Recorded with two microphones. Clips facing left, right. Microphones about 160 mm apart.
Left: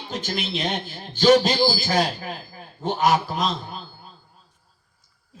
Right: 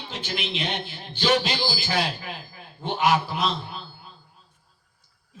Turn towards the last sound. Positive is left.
turn(degrees=40)  # may be behind; listen again after turning